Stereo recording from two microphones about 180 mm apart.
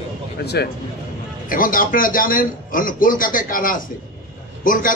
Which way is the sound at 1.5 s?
50° left (ahead or behind).